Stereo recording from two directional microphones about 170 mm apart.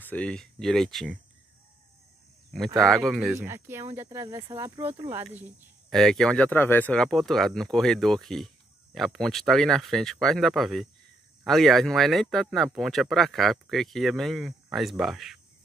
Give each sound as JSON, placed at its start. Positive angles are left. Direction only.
{"t": 0.0, "sound": "speech", "side_deg": 10}
{"t": 3.1, "sound": "speech", "side_deg": 0}
{"t": 3.4, "sound": "speech", "side_deg": -15}
{"t": 5.9, "sound": "speech", "side_deg": 5}